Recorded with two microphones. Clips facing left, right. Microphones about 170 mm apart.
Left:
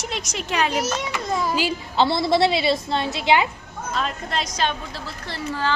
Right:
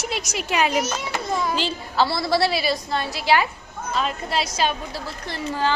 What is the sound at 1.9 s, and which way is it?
A woman's voice, 20° left (ahead or behind).